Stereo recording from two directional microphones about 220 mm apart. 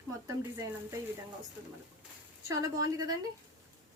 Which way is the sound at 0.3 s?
15° right (ahead or behind).